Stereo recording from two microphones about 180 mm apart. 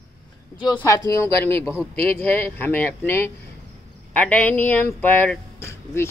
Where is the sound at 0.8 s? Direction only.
15° left (ahead or behind).